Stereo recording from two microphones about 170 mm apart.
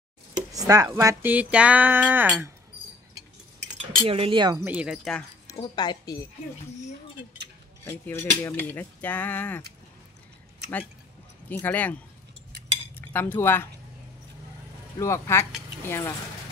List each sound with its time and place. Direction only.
0.5 s speech: 20° right (ahead or behind)
4.0 s speech: 35° right (ahead or behind)
4.6 s speech: 5° right (ahead or behind)
5.6 s speech: 25° left (ahead or behind)
7.8 s cutlery: 15° left (ahead or behind)
11.4 s cutlery: 10° left (ahead or behind)
15.0 s cutlery: 15° left (ahead or behind)